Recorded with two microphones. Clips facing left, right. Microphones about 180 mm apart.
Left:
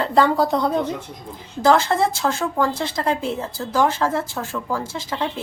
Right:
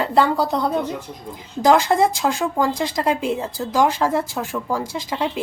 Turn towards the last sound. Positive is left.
turn(degrees=-15)  # may be behind; listen again after turning